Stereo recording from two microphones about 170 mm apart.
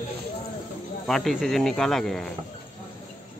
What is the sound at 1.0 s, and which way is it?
Speech, centre (ahead or behind).